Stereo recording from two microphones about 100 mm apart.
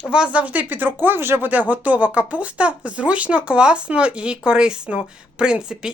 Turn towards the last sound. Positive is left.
turn(degrees=-5)  # may be behind; listen again after turning